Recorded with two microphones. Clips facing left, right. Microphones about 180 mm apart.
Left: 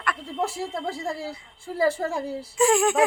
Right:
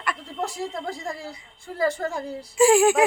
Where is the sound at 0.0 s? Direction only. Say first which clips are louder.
Left 2 dB; centre (ahead or behind).